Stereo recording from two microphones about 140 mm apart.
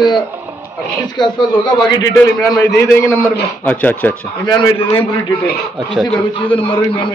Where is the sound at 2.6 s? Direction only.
20° left (ahead or behind).